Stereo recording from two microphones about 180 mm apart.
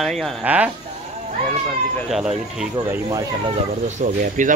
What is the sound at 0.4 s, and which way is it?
Speech, 10° right (ahead or behind).